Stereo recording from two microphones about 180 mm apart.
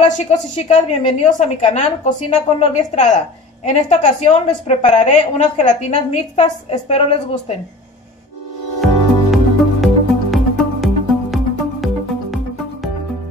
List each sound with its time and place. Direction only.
0.0 s a woman's voice: 35° left (ahead or behind)
8.8 s music: centre (ahead or behind)